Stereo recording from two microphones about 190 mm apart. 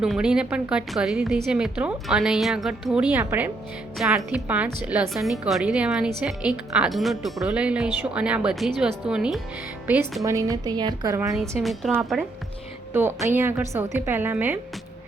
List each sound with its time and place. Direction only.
0.0 s a woman's voice: 5° right (ahead or behind)
11.6 s a woman's voice: centre (ahead or behind)
12.9 s a woman's voice: 10° right (ahead or behind)